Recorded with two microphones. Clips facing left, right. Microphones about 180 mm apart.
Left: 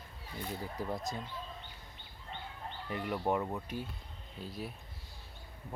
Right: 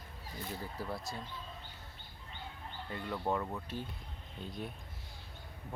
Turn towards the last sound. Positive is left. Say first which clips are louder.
# even
turn(degrees=5)  # may be behind; listen again after turning